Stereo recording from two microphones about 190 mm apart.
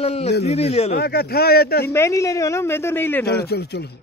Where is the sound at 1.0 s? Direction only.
55° left (ahead or behind).